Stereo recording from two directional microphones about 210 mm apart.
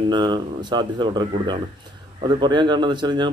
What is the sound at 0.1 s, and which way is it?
Speech, 20° right (ahead or behind).